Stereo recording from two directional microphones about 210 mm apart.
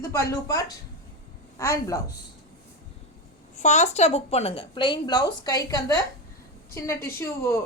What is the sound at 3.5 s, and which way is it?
A woman's voice, 35° left (ahead or behind).